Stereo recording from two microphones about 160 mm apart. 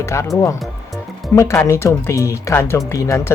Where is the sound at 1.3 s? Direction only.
15° left (ahead or behind).